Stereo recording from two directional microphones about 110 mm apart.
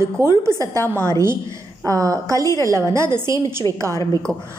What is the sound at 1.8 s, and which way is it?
A woman's voice, 30° right (ahead or behind).